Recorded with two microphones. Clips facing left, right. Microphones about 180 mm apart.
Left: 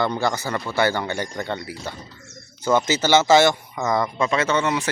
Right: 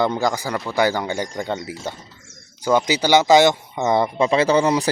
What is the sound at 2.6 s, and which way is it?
Speech, 10° right (ahead or behind).